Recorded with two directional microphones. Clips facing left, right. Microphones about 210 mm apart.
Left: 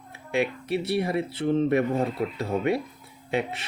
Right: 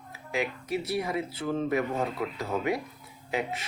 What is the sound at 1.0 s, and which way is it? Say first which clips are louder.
Speech: left 5 dB; 30° left (ahead or behind).